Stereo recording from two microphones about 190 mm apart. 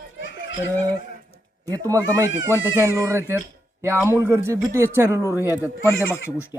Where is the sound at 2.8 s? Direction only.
15° right (ahead or behind).